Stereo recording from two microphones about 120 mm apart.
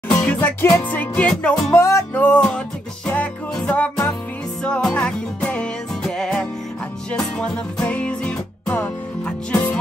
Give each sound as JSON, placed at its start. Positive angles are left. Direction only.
{"t": 0.2, "sound": "music", "side_deg": 15}
{"t": 1.8, "sound": "music", "side_deg": 25}
{"t": 2.1, "sound": "music", "side_deg": 10}